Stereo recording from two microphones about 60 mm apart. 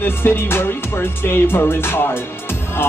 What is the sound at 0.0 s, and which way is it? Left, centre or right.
Music, left.